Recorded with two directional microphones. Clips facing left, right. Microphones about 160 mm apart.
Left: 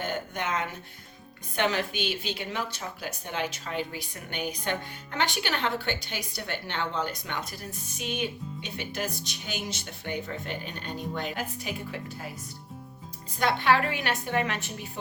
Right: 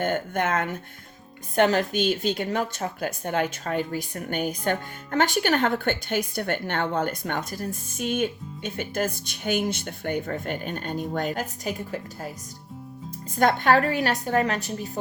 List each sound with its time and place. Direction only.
0.0 s speech: 50° right (ahead or behind)
13.4 s a woman's voice: 45° right (ahead or behind)